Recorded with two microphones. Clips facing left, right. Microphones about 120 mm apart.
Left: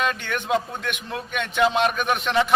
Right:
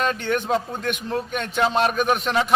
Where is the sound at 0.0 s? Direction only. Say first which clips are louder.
Right 3 dB; 35° right (ahead or behind).